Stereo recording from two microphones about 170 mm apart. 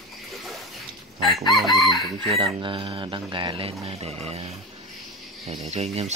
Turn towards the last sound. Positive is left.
turn(degrees=-40)  # may be behind; listen again after turning